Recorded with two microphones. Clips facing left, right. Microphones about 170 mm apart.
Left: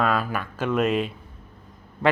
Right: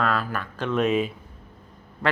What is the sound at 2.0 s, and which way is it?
Quack, 25° left (ahead or behind).